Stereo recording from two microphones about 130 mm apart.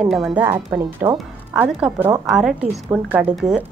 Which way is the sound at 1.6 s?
15° right (ahead or behind).